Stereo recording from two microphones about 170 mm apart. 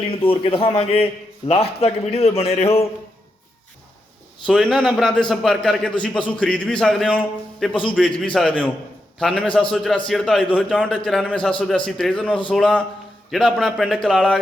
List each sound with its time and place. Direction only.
0.1 s a man's voice: 30° left (ahead or behind)
4.4 s a man's voice: 5° left (ahead or behind)